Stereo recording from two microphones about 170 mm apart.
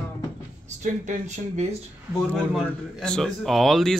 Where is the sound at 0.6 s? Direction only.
45° right (ahead or behind).